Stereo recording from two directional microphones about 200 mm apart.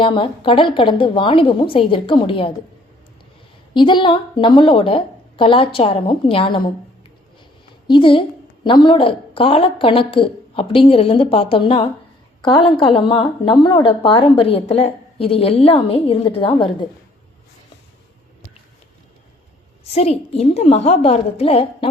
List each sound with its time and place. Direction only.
0.0 s a woman's voice: 25° left (ahead or behind)
3.8 s a woman's voice: 25° left (ahead or behind)
7.9 s a woman's voice: 25° left (ahead or behind)
19.8 s a woman's voice: 30° left (ahead or behind)